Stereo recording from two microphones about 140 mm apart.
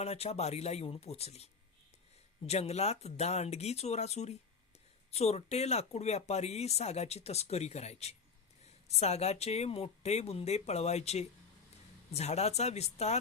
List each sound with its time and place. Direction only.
0.0 s speech: 50° left (ahead or behind)
2.5 s speech: 50° left (ahead or behind)